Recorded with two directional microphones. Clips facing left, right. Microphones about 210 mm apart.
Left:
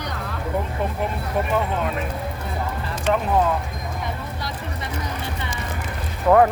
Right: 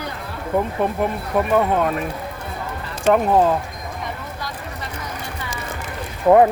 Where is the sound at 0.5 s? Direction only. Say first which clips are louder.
Right 6 dB; 55° right (ahead or behind).